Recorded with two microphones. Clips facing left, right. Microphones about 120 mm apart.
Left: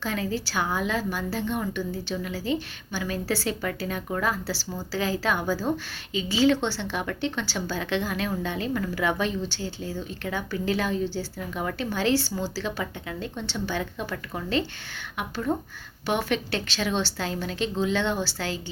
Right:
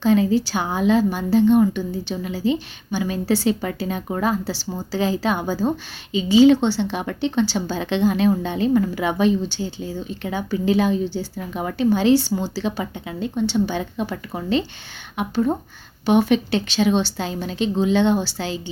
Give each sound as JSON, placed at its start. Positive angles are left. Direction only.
{"t": 0.0, "sound": "a woman's voice", "side_deg": -20}